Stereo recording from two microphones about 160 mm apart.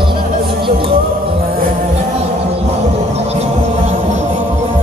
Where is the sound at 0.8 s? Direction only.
70° right (ahead or behind).